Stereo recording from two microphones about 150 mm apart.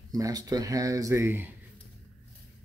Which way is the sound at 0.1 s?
25° right (ahead or behind).